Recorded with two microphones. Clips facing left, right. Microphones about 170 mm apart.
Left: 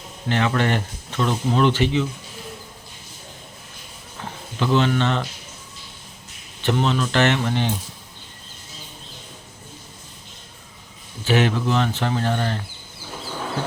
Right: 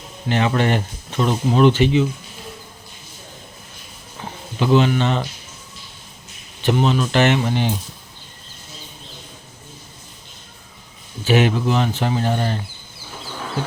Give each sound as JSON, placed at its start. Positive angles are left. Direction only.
{"t": 0.3, "sound": "speech", "side_deg": -20}
{"t": 4.2, "sound": "a sound", "side_deg": -15}
{"t": 6.6, "sound": "speech", "side_deg": -15}
{"t": 11.3, "sound": "speech", "side_deg": -15}